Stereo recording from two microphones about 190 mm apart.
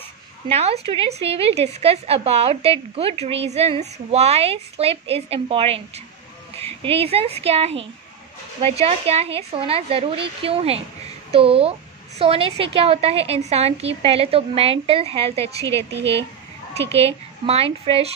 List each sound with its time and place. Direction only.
0.5 s a woman's voice: 30° right (ahead or behind)
15.5 s a woman's voice: 15° left (ahead or behind)
16.9 s a woman's voice: 30° right (ahead or behind)